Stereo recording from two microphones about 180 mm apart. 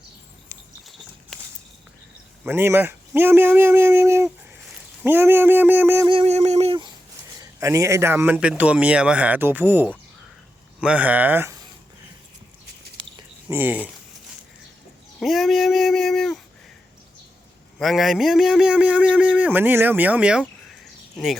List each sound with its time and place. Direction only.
2.4 s a man's voice: 15° right (ahead or behind)
6.1 s speech: 35° right (ahead or behind)
7.6 s a man's voice: 15° right (ahead or behind)
13.5 s a man's voice: 10° right (ahead or behind)
15.2 s speech: centre (ahead or behind)
17.7 s a man's voice: centre (ahead or behind)